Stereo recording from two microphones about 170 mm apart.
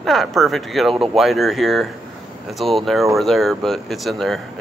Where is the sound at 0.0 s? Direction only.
Centre (ahead or behind).